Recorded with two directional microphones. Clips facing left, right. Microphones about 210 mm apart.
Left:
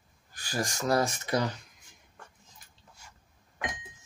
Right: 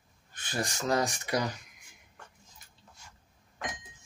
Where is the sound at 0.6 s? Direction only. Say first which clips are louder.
Left 2 dB; 40° left (ahead or behind).